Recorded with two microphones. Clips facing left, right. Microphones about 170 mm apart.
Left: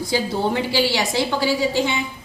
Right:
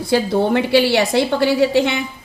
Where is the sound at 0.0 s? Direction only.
60° right (ahead or behind).